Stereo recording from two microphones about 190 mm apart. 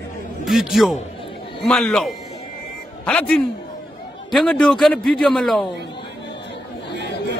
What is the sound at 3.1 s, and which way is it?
Speech, 5° left (ahead or behind).